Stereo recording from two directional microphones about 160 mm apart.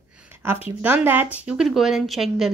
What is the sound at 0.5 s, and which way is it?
Speech, 10° right (ahead or behind).